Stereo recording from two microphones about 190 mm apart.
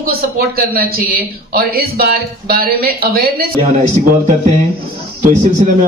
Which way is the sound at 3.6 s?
35° right (ahead or behind).